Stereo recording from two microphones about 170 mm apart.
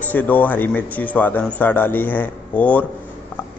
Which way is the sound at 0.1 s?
10° left (ahead or behind).